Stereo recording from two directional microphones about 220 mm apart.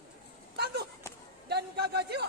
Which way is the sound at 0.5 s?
45° right (ahead or behind).